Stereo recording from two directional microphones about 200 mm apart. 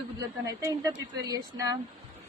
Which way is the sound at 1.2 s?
20° right (ahead or behind).